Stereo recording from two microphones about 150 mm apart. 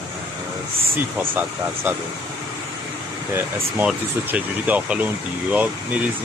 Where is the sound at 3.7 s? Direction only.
10° right (ahead or behind).